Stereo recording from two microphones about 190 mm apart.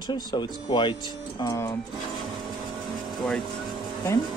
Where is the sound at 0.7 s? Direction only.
25° left (ahead or behind).